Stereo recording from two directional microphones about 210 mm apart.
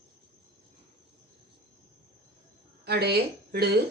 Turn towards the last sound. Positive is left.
turn(degrees=-50)  # may be behind; listen again after turning